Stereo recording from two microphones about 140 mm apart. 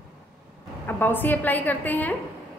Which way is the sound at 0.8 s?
15° left (ahead or behind).